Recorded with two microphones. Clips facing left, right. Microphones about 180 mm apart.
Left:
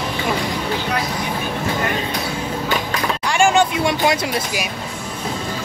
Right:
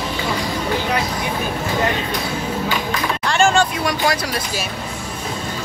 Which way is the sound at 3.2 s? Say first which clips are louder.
Left 1 dB; 15° left (ahead or behind).